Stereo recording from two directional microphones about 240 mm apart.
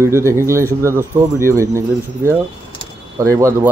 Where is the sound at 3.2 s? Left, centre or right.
Centre.